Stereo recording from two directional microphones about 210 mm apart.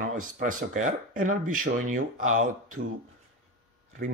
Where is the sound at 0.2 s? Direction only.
40° right (ahead or behind).